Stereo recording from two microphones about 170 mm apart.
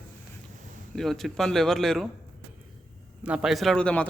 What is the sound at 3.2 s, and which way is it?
Speech, 5° right (ahead or behind).